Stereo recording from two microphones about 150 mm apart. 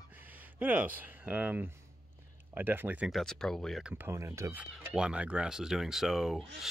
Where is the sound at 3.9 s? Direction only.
15° right (ahead or behind).